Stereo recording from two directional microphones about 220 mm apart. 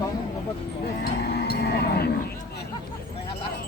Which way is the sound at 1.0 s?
45° left (ahead or behind).